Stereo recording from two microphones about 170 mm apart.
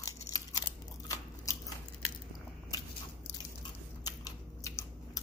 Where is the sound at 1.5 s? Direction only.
20° left (ahead or behind).